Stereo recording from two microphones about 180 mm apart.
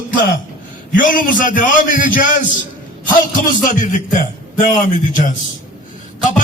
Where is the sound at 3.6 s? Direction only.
45° left (ahead or behind).